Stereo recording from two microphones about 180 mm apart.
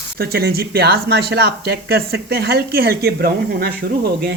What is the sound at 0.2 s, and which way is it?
Speech, 60° right (ahead or behind).